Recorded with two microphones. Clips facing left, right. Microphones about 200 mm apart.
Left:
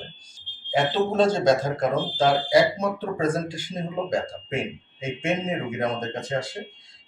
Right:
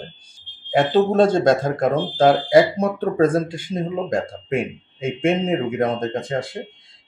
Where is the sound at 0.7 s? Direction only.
55° right (ahead or behind).